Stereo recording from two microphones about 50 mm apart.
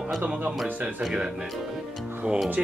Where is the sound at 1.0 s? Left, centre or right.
Centre.